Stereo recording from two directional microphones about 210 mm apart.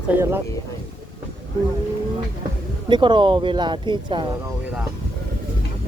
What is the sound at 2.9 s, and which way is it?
Speech, 20° right (ahead or behind).